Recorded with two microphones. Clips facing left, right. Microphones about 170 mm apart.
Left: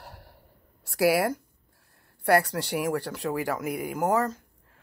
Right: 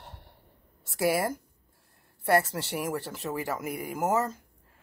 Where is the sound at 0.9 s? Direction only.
Centre (ahead or behind).